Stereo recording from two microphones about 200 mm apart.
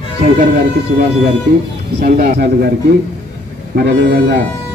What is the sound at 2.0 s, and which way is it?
Speech, 45° right (ahead or behind).